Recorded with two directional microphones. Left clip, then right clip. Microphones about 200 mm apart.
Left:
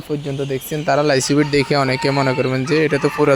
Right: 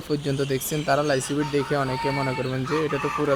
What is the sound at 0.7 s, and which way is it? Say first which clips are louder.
Speech: left 7 dB; 20° left (ahead or behind).